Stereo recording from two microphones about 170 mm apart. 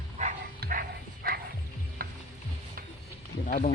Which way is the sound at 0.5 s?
60° right (ahead or behind).